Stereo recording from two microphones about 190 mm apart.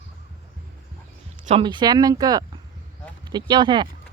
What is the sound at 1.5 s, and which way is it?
Speech, 25° right (ahead or behind).